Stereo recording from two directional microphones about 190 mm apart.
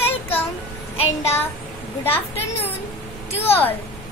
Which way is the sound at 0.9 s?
30° left (ahead or behind).